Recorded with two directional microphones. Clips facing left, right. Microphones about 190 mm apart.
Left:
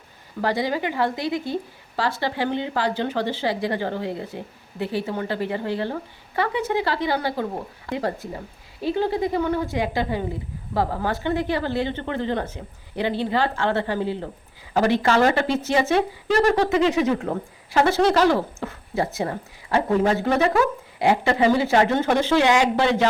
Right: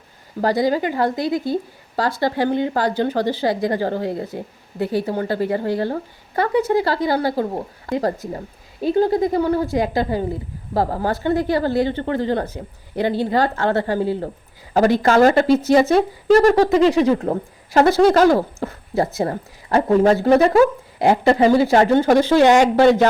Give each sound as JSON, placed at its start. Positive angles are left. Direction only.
{"t": 0.4, "sound": "a woman's voice", "side_deg": -40}